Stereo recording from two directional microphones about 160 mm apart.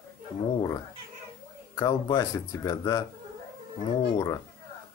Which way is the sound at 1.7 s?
20° left (ahead or behind).